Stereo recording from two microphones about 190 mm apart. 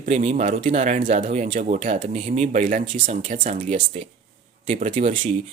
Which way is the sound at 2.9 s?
30° right (ahead or behind).